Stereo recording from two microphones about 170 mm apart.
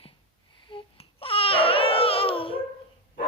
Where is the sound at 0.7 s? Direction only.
30° left (ahead or behind).